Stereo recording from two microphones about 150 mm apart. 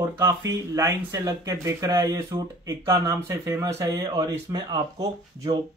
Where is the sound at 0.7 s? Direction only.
20° right (ahead or behind).